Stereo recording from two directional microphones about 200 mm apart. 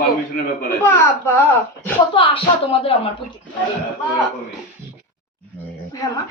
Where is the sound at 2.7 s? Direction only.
30° left (ahead or behind).